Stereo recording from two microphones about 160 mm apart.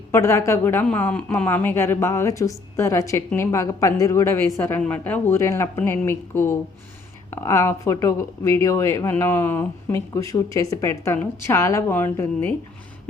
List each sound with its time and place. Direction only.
0.1 s a woman's voice: 15° left (ahead or behind)